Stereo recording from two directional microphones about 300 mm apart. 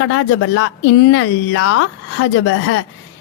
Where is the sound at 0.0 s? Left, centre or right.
Left.